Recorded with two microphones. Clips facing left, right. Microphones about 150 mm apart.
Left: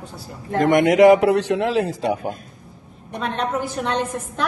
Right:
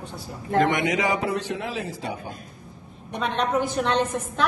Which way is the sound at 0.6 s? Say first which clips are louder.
Left 11 dB; 50° left (ahead or behind).